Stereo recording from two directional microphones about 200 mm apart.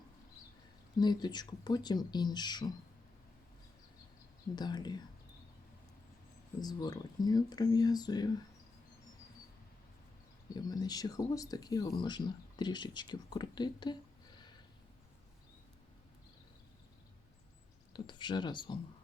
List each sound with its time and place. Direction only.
0.9 s speech: 20° left (ahead or behind)
4.5 s speech: 20° left (ahead or behind)
6.6 s speech: 20° left (ahead or behind)
10.5 s speech: 20° left (ahead or behind)
17.9 s speech: 25° left (ahead or behind)